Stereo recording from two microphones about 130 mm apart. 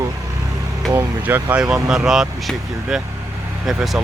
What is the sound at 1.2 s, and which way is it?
Speech, 10° right (ahead or behind).